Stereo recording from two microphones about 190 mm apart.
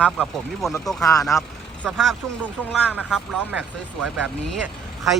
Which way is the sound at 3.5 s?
5° right (ahead or behind).